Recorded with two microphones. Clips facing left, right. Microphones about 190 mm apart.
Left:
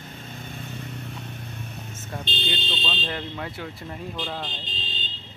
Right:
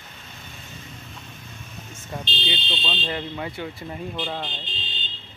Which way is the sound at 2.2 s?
50° left (ahead or behind).